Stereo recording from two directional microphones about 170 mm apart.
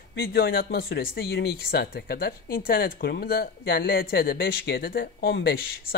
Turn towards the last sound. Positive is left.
turn(degrees=70)  # may be behind; listen again after turning